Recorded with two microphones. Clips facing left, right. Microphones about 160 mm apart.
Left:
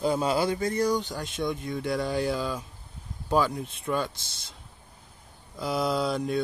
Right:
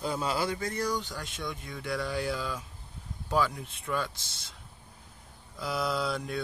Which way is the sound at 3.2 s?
25° left (ahead or behind).